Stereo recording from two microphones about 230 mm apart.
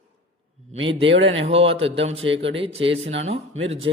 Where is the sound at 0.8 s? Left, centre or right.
Right.